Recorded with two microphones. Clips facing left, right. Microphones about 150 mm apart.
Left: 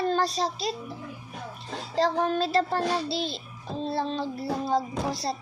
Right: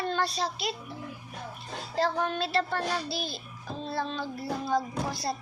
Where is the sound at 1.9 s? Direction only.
30° left (ahead or behind).